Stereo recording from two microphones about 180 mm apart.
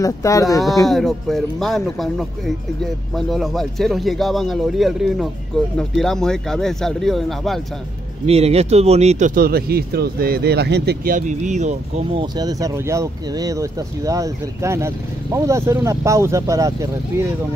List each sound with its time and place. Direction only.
0.0 s speech: 20° left (ahead or behind)
0.8 s speech: centre (ahead or behind)
8.3 s speech: 35° right (ahead or behind); by 11.1 s 65° right (ahead or behind)
11.1 s speech: 45° right (ahead or behind)
12.4 s speech: 20° right (ahead or behind)